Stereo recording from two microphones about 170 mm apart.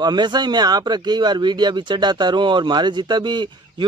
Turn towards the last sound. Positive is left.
turn(degrees=-25)  # may be behind; listen again after turning